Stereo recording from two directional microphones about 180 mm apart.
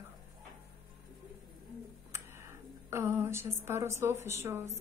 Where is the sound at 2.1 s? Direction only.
15° right (ahead or behind).